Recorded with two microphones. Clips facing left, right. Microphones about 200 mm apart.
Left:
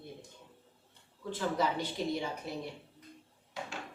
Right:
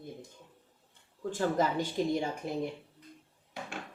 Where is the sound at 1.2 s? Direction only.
45° right (ahead or behind).